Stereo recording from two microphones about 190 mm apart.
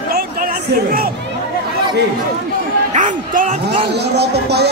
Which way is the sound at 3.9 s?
60° right (ahead or behind).